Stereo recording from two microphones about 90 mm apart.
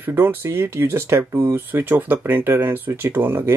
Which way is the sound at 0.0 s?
25° right (ahead or behind).